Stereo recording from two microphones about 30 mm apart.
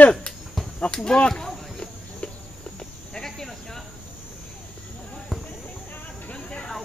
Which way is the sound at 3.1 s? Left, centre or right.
Centre.